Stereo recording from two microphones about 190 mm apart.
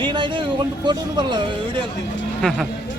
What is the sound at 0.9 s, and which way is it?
Speech, 25° right (ahead or behind).